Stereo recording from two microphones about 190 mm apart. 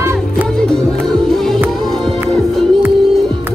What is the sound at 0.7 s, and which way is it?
Music, 5° left (ahead or behind).